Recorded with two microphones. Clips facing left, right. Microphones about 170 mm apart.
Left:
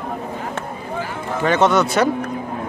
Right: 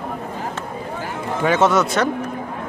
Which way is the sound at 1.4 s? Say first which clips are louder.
Left 1 dB; 5° right (ahead or behind).